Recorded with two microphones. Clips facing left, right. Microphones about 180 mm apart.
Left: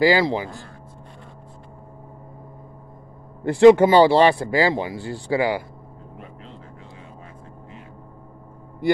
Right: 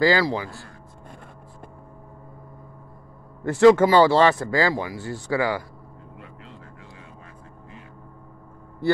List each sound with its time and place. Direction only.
0.0 s speech: 15° left (ahead or behind)
3.4 s speech: 15° left (ahead or behind)